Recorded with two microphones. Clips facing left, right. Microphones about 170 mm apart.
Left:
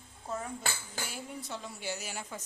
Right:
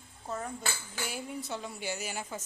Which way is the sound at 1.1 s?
Centre (ahead or behind).